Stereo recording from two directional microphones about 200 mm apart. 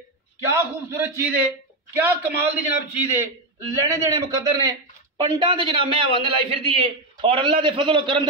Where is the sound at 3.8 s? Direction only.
15° right (ahead or behind).